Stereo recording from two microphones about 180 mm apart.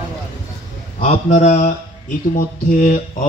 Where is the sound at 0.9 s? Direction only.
45° left (ahead or behind).